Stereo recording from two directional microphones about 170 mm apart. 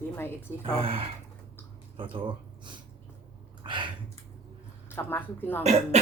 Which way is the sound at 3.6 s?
30° right (ahead or behind).